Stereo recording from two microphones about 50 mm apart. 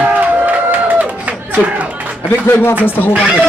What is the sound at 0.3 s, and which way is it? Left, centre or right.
Crowd, right.